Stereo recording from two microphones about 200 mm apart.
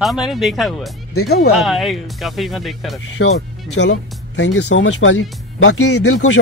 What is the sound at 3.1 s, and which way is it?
Speech, 65° left (ahead or behind).